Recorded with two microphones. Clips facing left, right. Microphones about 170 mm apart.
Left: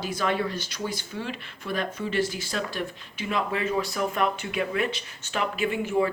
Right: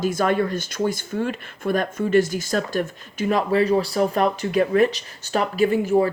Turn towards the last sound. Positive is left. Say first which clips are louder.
# right 7 dB
turn(degrees=-40)  # may be behind; listen again after turning